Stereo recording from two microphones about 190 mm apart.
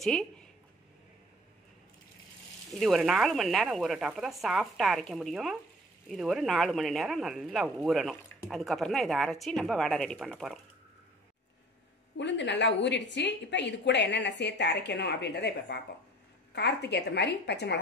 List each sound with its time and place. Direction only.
0.0 s speech: centre (ahead or behind)
2.7 s speech: centre (ahead or behind)
12.2 s a woman's voice: 70° left (ahead or behind)